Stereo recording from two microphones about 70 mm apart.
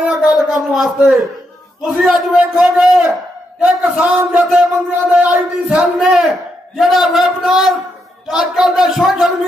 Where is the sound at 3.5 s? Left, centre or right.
Right.